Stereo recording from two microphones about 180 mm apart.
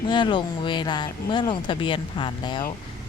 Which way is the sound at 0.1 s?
25° left (ahead or behind).